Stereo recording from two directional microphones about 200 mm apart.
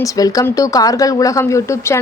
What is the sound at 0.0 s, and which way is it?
Speech, 15° left (ahead or behind).